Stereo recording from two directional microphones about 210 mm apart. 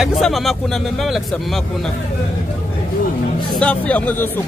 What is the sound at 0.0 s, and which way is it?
Speech, centre (ahead or behind).